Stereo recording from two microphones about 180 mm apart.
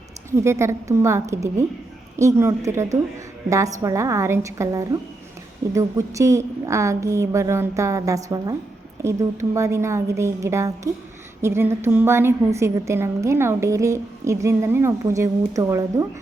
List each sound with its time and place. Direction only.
0.3 s a woman's voice: 15° right (ahead or behind)